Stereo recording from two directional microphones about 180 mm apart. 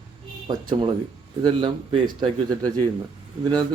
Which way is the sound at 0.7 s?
25° right (ahead or behind).